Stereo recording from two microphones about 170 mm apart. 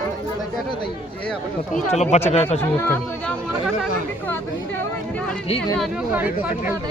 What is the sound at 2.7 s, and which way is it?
Speech, 15° left (ahead or behind).